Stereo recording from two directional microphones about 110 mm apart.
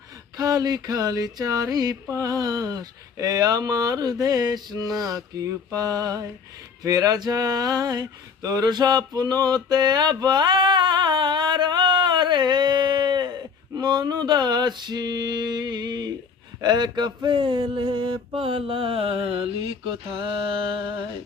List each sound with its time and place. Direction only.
0.3 s speech: 35° right (ahead or behind)
9.6 s a sound: 40° right (ahead or behind)
13.7 s speech: 40° right (ahead or behind)
17.2 s mantra: 45° right (ahead or behind)